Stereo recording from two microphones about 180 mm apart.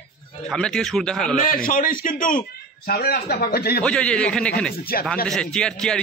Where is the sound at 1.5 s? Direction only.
50° left (ahead or behind).